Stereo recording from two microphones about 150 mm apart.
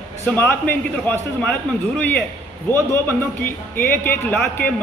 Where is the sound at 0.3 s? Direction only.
10° left (ahead or behind).